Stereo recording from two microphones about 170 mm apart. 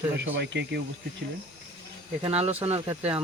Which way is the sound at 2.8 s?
10° right (ahead or behind).